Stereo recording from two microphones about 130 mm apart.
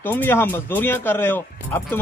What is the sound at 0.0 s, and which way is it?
Speech, 15° left (ahead or behind).